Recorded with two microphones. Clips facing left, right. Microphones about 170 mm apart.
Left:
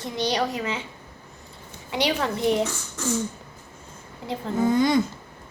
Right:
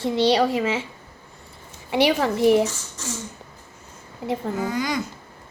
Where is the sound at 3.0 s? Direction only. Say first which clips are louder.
Left 6 dB; 60° left (ahead or behind).